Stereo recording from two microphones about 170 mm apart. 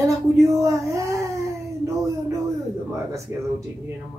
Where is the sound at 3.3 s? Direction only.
15° right (ahead or behind).